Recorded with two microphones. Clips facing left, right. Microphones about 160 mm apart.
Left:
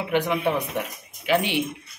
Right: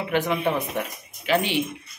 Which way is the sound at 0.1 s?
15° left (ahead or behind).